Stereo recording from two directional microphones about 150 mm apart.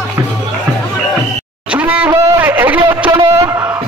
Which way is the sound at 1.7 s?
10° right (ahead or behind).